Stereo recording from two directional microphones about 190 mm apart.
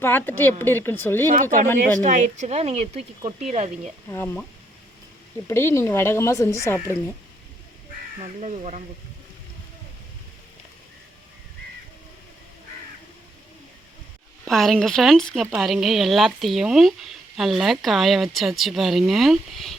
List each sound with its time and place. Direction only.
0.0 s speech: 10° left (ahead or behind)
1.3 s speech: 45° right (ahead or behind)
5.5 s speech: 15° left (ahead or behind)
8.2 s speech: 35° right (ahead or behind)
14.4 s speech: centre (ahead or behind)